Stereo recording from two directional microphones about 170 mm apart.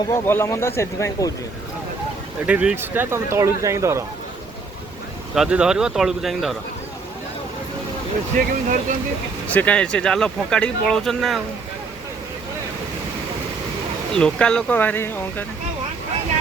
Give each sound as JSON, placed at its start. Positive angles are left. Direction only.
{"t": 0.0, "sound": "speech", "side_deg": 15}
{"t": 2.5, "sound": "speech", "side_deg": -10}
{"t": 5.3, "sound": "speech", "side_deg": -5}
{"t": 8.4, "sound": "speech", "side_deg": -50}
{"t": 9.5, "sound": "speech", "side_deg": 10}
{"t": 14.1, "sound": "speech", "side_deg": 5}